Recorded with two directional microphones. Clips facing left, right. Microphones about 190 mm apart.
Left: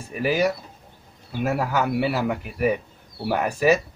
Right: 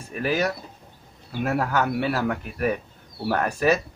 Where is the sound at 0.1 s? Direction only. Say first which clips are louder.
Left 3 dB; 10° left (ahead or behind).